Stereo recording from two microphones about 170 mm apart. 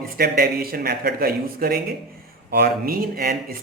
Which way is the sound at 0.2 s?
60° right (ahead or behind).